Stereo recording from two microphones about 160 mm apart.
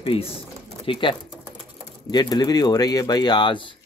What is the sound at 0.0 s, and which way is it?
Speech, 35° left (ahead or behind).